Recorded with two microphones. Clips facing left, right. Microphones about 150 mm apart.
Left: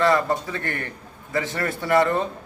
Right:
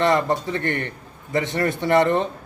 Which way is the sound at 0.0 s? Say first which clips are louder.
Right 1 dB; 20° right (ahead or behind).